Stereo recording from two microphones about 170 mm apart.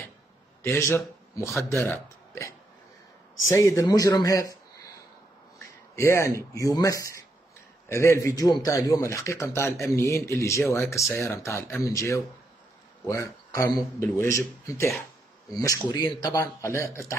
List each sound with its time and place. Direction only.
0.6 s a man's voice: 15° left (ahead or behind)
5.9 s a man's voice: 15° left (ahead or behind)